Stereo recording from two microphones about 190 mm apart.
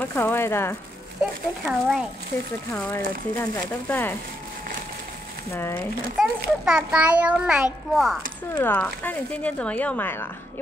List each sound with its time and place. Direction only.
0.0 s speech: 10° left (ahead or behind)
1.6 s a child's voice: 5° right (ahead or behind)
2.7 s speech: 15° left (ahead or behind)
5.5 s speech: 15° left (ahead or behind)
6.1 s a child's voice: 5° right (ahead or behind)